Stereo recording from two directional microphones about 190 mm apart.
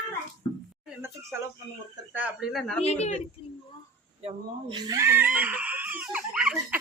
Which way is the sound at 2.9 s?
35° left (ahead or behind).